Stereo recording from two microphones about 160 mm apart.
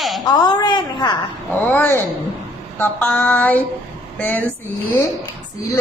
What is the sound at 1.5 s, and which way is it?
Female singing, 10° left (ahead or behind).